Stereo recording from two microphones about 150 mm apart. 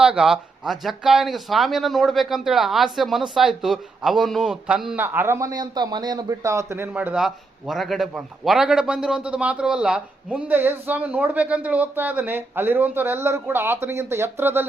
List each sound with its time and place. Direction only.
0.0 s a man's voice: 5° right (ahead or behind)